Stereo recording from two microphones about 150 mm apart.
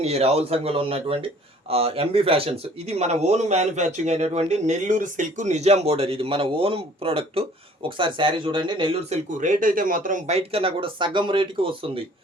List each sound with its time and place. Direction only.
0.0 s speech: 45° right (ahead or behind)
9.4 s speech: 65° right (ahead or behind); by 12.0 s 35° right (ahead or behind)